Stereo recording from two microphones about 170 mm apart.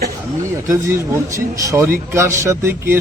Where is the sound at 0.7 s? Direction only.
20° right (ahead or behind).